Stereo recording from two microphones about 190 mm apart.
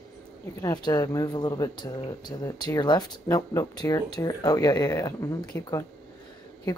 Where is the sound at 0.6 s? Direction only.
20° left (ahead or behind).